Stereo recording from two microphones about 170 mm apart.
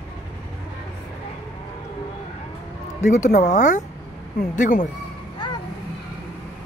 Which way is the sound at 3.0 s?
50° left (ahead or behind).